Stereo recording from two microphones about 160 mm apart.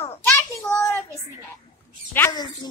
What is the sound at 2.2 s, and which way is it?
Speech, 25° left (ahead or behind).